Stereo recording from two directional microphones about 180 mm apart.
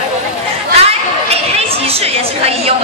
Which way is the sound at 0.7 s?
35° right (ahead or behind).